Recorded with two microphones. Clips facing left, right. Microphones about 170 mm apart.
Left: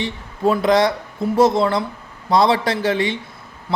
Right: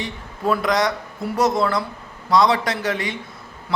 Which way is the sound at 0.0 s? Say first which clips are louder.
Left 5 dB; 25° left (ahead or behind).